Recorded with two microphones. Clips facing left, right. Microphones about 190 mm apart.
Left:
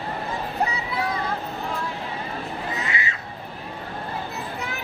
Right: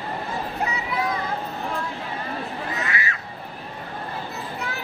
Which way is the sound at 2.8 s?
20° left (ahead or behind).